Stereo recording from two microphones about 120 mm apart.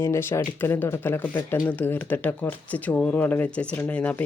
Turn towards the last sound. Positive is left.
turn(degrees=10)  # may be behind; listen again after turning